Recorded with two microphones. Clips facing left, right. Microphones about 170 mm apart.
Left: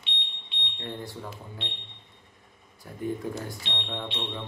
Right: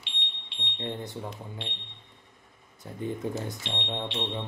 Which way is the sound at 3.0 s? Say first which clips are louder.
Even; 20° right (ahead or behind).